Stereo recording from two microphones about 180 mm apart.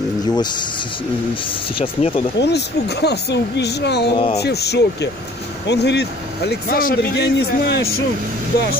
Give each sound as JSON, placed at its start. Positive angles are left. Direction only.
{"t": 1.8, "sound": "speech", "side_deg": 30}
{"t": 2.4, "sound": "speech", "side_deg": 65}
{"t": 4.1, "sound": "speech", "side_deg": 30}
{"t": 4.4, "sound": "speech", "side_deg": 65}